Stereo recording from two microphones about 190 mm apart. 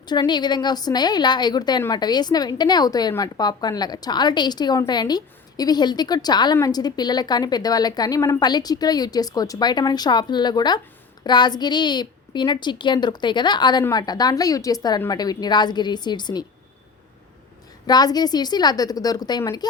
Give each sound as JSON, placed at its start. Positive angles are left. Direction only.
{"t": 0.0, "sound": "a woman's voice", "side_deg": 20}
{"t": 17.8, "sound": "a woman's voice", "side_deg": 20}